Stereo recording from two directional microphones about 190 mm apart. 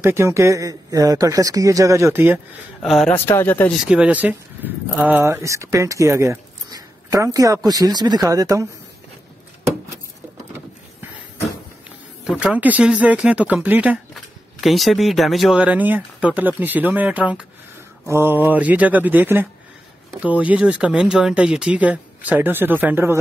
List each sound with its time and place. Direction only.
0.0 s speech: 15° right (ahead or behind)
2.8 s speech: centre (ahead or behind)
3.3 s speech: 10° left (ahead or behind)
3.8 s speech: 5° right (ahead or behind)
12.3 s speech: 5° right (ahead or behind)